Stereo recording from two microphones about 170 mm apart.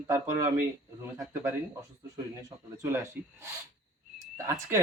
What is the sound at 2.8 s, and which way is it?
Speech, 15° right (ahead or behind).